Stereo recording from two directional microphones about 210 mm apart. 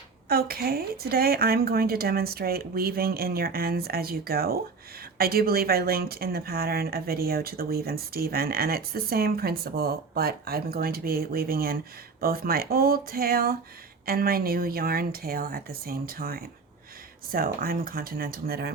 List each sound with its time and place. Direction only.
0.3 s speech: 45° right (ahead or behind)